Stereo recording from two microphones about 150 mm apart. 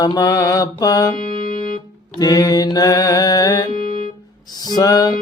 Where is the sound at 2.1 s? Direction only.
25° left (ahead or behind).